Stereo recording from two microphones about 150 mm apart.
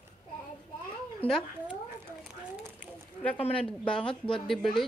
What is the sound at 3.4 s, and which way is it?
Speech, 40° left (ahead or behind).